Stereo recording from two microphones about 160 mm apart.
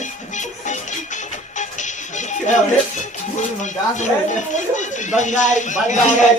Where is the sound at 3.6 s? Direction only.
50° left (ahead or behind).